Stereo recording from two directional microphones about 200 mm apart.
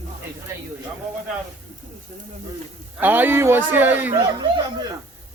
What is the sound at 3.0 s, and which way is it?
Speech, 10° right (ahead or behind).